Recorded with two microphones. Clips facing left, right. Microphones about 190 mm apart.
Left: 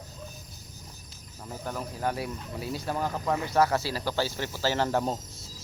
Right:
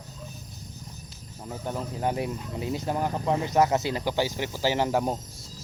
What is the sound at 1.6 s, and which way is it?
Speech, 20° right (ahead or behind).